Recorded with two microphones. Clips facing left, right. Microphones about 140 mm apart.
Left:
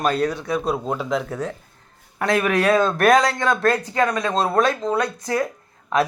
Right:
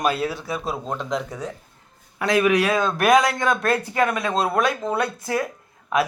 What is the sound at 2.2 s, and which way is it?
Speech, 40° left (ahead or behind).